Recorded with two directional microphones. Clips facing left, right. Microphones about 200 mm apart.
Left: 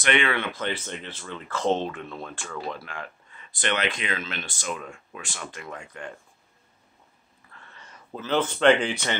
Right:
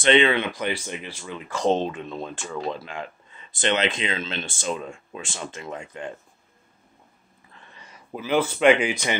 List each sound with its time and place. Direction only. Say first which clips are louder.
0.0 s speech: right 6 dB; 25° right (ahead or behind)
7.5 s speech: right 1 dB; 15° right (ahead or behind)